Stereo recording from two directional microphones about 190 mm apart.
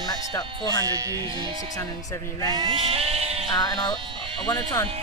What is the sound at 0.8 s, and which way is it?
Speech, 20° right (ahead or behind).